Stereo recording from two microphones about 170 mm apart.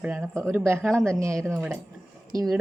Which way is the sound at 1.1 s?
15° right (ahead or behind).